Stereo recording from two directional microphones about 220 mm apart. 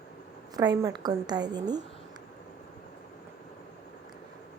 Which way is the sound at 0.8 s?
15° right (ahead or behind).